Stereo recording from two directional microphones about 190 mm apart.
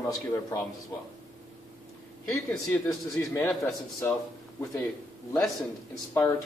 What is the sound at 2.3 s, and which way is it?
A man's voice, 15° left (ahead or behind).